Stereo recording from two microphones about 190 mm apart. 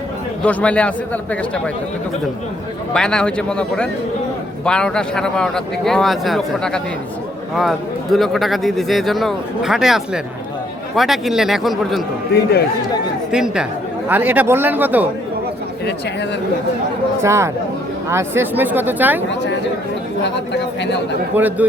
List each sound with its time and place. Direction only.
0.4 s a man's voice: 5° left (ahead or behind)
2.9 s a man's voice: 5° left (ahead or behind)
12.3 s speech: 55° left (ahead or behind)
13.3 s a man's voice: 5° right (ahead or behind)
17.2 s speech: 15° right (ahead or behind)
19.3 s speech: 65° left (ahead or behind)
21.3 s speech: 10° right (ahead or behind)